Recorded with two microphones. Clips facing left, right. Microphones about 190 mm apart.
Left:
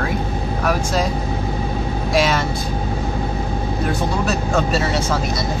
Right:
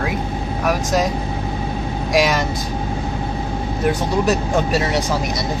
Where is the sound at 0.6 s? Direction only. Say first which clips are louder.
Right 2 dB; 15° right (ahead or behind).